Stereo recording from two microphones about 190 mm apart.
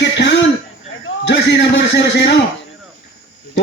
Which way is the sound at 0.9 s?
70° left (ahead or behind).